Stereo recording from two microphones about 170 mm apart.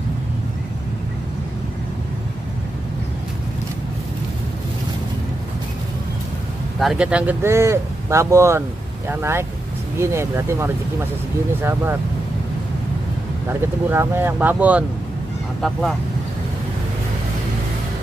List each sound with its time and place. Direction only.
6.8 s speech: 5° right (ahead or behind)
13.5 s speech: 15° right (ahead or behind); by 16.0 s centre (ahead or behind)